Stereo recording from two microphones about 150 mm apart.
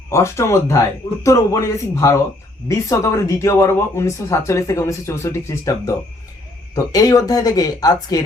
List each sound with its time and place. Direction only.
0.1 s speech: 20° left (ahead or behind)